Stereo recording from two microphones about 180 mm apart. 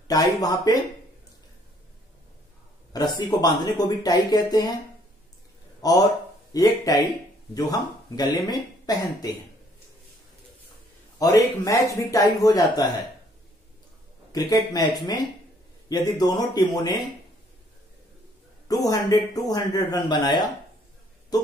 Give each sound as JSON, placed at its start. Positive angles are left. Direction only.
{"t": 0.1, "sound": "speech", "side_deg": 20}
{"t": 2.9, "sound": "speech", "side_deg": 20}
{"t": 5.8, "sound": "a man's voice", "side_deg": 20}
{"t": 11.1, "sound": "speech", "side_deg": 20}
{"t": 14.3, "sound": "speech", "side_deg": 20}
{"t": 18.7, "sound": "speech", "side_deg": 20}